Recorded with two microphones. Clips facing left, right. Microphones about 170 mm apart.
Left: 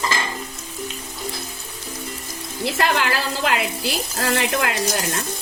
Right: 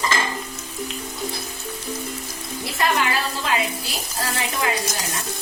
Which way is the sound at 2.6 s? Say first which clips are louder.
Left 2 dB; 75° left (ahead or behind).